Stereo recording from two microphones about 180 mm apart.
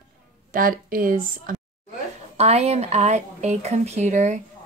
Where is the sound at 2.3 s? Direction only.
35° right (ahead or behind).